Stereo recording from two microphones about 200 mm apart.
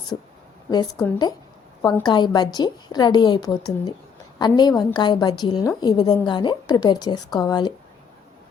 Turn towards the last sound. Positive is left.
turn(degrees=20)  # may be behind; listen again after turning